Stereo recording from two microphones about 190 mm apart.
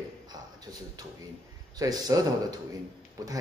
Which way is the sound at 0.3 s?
20° right (ahead or behind).